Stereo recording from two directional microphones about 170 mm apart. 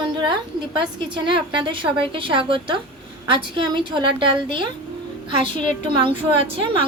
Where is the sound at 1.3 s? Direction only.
30° right (ahead or behind).